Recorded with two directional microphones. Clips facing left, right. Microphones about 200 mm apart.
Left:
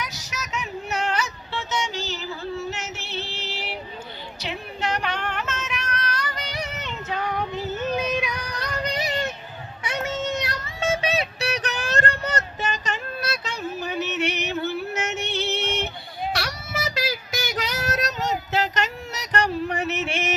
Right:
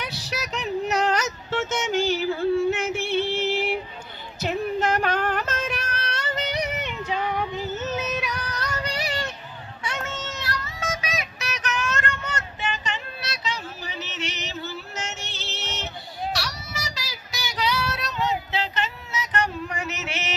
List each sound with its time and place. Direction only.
0.0 s a sound: 30° right (ahead or behind); by 3.8 s 50° right (ahead or behind)
4.4 s female singing: 45° right (ahead or behind); by 6.9 s 15° right (ahead or behind)
8.2 s female singing: 15° left (ahead or behind)
10.5 s child singing: 30° left (ahead or behind)
19.7 s yodeling: 60° left (ahead or behind)